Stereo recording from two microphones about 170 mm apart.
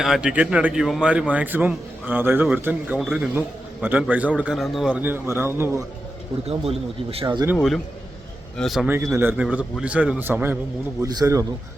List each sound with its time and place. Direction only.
0.0 s a man's voice: 5° right (ahead or behind)
6.4 s speech: 35° right (ahead or behind)
7.5 s speech: centre (ahead or behind)
8.9 s a man's voice: 15° right (ahead or behind)